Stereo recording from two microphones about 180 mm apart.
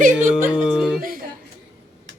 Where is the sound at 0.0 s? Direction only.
45° right (ahead or behind).